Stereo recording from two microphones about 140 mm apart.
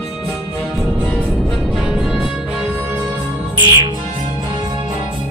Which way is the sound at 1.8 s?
5° right (ahead or behind).